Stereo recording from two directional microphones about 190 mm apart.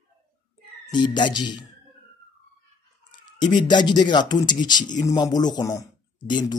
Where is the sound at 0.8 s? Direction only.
25° left (ahead or behind).